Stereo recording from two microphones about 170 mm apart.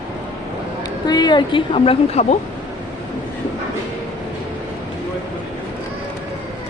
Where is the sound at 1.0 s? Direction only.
25° left (ahead or behind).